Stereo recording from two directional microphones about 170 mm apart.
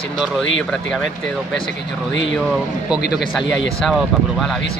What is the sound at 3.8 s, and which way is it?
Speech, centre (ahead or behind).